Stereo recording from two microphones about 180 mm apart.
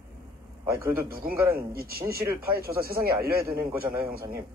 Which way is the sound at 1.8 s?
55° right (ahead or behind).